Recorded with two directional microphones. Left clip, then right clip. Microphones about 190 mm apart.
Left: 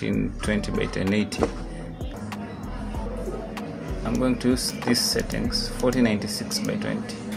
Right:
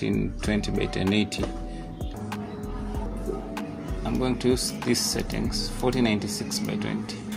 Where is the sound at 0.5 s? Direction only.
30° right (ahead or behind).